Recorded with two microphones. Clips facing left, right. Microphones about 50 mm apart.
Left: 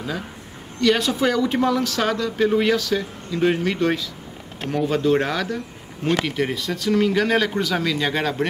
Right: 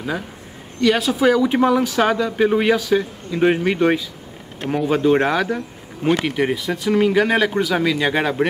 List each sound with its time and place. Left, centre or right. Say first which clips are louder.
0.7 s speech: right 2 dB; centre